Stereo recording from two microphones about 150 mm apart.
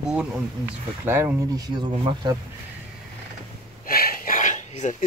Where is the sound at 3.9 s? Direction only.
80° left; by 5.1 s 55° left (ahead or behind).